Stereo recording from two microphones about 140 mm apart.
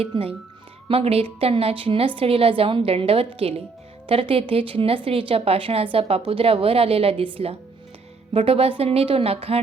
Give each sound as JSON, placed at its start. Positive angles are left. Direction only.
{"t": 0.0, "sound": "a woman's voice", "side_deg": -45}
{"t": 8.3, "sound": "a woman's voice", "side_deg": -45}